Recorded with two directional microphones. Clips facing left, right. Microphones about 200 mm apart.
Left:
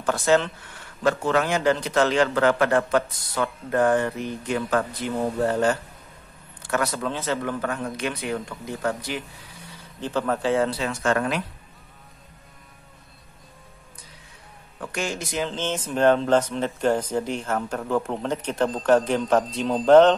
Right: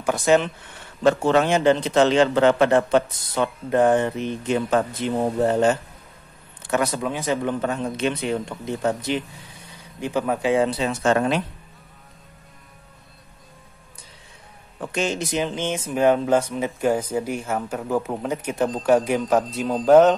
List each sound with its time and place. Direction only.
0.0 s a man's voice: 15° right (ahead or behind)
14.8 s speech: 20° right (ahead or behind)